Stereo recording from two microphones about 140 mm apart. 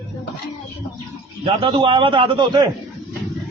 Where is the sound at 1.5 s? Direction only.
35° right (ahead or behind).